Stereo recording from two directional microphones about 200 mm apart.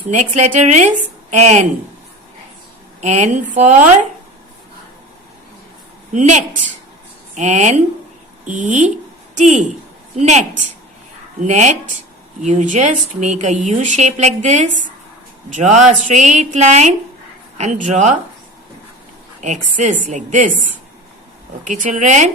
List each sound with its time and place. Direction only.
0.1 s speech: 35° right (ahead or behind)
3.0 s speech: 35° right (ahead or behind)
6.1 s speech: 35° right (ahead or behind)
19.4 s speech: 35° right (ahead or behind)
21.6 s speech: 40° right (ahead or behind)